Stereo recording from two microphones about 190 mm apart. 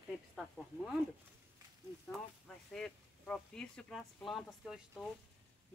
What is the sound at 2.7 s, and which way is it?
Speech, 5° left (ahead or behind).